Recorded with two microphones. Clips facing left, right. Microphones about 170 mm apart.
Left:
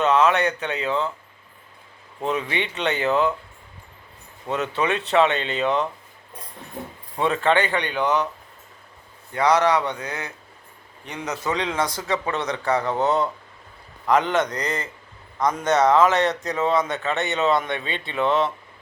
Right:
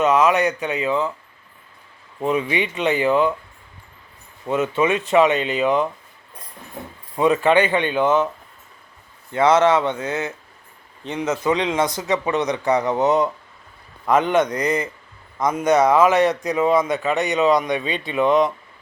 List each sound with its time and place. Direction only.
0.0 s a man's voice: 10° right (ahead or behind)
2.2 s speech: 5° right (ahead or behind)
4.4 s a man's voice: centre (ahead or behind)
7.3 s a man's voice: 15° right (ahead or behind)
9.3 s a man's voice: 25° right (ahead or behind)